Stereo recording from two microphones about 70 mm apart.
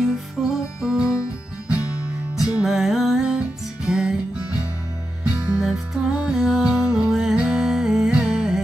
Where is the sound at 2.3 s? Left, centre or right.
Centre.